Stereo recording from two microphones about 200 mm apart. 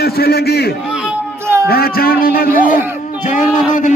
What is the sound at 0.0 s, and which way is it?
A man's voice, 50° left (ahead or behind).